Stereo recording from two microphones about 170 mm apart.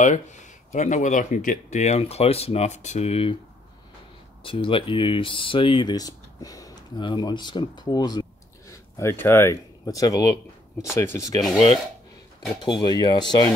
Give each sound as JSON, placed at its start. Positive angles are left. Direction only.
{"t": 0.0, "sound": "speech", "side_deg": 45}
{"t": 4.4, "sound": "speech", "side_deg": 30}
{"t": 12.6, "sound": "speech", "side_deg": 25}